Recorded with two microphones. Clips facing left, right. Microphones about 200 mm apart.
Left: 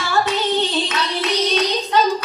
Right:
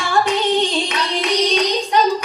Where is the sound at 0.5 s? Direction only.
15° right (ahead or behind).